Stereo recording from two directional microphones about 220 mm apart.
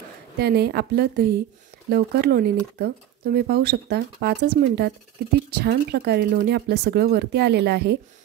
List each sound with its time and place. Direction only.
0.4 s speech: 45° right (ahead or behind)